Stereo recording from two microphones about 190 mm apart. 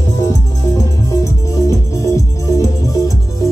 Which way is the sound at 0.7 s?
15° left (ahead or behind).